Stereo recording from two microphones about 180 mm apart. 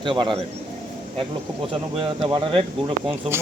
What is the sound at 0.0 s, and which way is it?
Speech, 25° right (ahead or behind).